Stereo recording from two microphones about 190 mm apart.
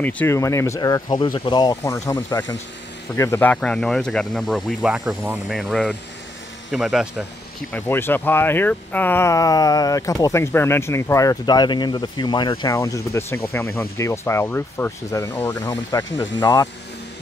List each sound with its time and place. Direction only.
0.0 s speech: 10° left (ahead or behind)
7.7 s speech: 10° left (ahead or behind)